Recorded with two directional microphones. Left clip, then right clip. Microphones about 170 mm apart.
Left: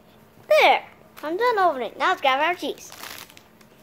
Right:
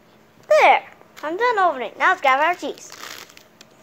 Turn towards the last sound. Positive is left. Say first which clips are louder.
# right 2 dB
turn(degrees=0)  # may be behind; listen again after turning